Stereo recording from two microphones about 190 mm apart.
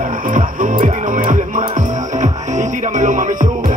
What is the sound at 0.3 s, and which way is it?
Music, 45° right (ahead or behind).